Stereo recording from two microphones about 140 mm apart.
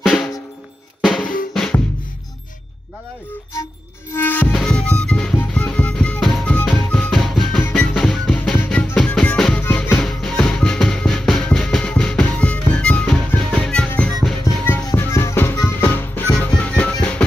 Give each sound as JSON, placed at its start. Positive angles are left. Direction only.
{"t": 0.0, "sound": "music", "side_deg": 0}
{"t": 1.0, "sound": "drum", "side_deg": 0}
{"t": 4.1, "sound": "music", "side_deg": 15}